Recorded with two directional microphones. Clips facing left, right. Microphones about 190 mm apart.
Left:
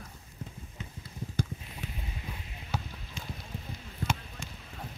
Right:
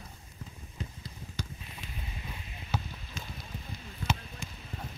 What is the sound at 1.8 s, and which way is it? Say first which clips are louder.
Clip-clop: left 8 dB; 65° left (ahead or behind).